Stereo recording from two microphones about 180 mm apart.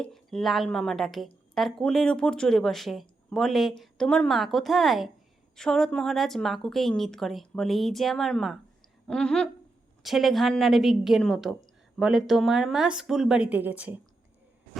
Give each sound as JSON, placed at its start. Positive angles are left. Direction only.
{"t": 0.0, "sound": "a woman's voice", "side_deg": 0}